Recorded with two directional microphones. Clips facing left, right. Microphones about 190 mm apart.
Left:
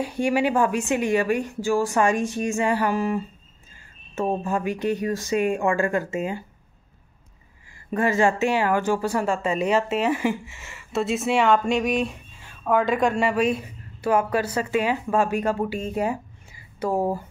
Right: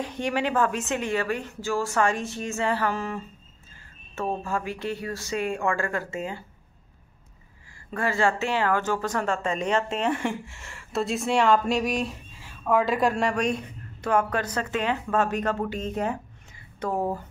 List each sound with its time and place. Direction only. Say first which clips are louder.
0.0 s speech: left 5 dB; 10° left (ahead or behind)
7.9 s speech: left 4 dB; 20° left (ahead or behind)